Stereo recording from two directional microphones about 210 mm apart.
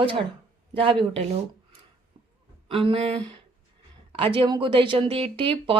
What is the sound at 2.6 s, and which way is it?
Speech, 25° right (ahead or behind).